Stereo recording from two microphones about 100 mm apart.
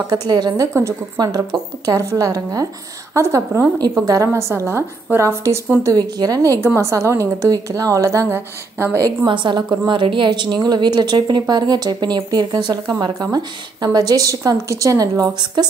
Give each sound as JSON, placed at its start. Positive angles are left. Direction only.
{"t": 0.3, "sound": "a woman's voice", "side_deg": -40}
{"t": 4.3, "sound": "speech", "side_deg": -25}
{"t": 5.9, "sound": "a woman's voice", "side_deg": -40}
{"t": 9.0, "sound": "a woman's voice", "side_deg": -50}